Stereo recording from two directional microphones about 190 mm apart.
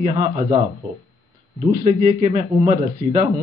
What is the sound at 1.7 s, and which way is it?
A man's voice, 40° right (ahead or behind).